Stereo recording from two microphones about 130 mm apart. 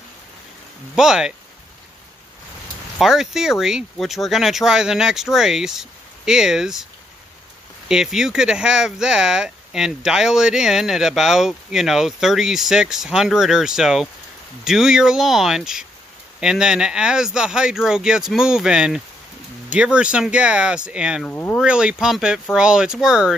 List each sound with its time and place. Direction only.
0.9 s speech: 5° right (ahead or behind)
3.0 s speech: 5° right (ahead or behind)
7.9 s speech: 5° right (ahead or behind)
21.3 s speech: 15° left (ahead or behind)
21.5 s speech: 5° right (ahead or behind)